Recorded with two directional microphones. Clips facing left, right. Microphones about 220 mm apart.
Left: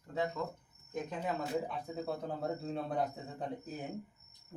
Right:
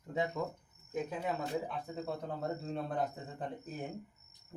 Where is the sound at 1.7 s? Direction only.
5° left (ahead or behind).